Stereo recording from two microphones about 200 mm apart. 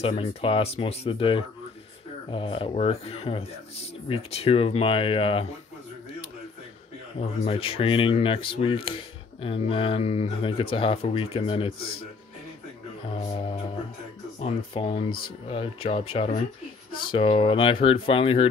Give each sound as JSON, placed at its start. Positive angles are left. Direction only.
{"t": 0.0, "sound": "speech", "side_deg": 30}
{"t": 7.2, "sound": "speech", "side_deg": 30}
{"t": 13.3, "sound": "speech", "side_deg": 30}
{"t": 15.0, "sound": "speech", "side_deg": 50}
{"t": 15.5, "sound": "speech", "side_deg": 30}